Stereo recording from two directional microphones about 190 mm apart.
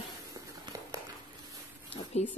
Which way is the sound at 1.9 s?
30° left (ahead or behind).